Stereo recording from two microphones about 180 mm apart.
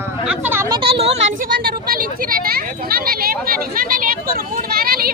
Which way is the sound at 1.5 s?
55° right (ahead or behind).